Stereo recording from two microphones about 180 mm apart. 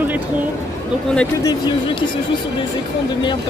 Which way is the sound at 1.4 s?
25° left (ahead or behind).